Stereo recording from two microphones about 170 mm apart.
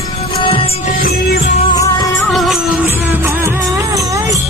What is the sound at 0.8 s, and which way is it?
Music, 60° left (ahead or behind).